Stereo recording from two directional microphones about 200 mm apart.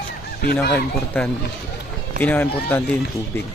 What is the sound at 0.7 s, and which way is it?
Speech, 5° left (ahead or behind).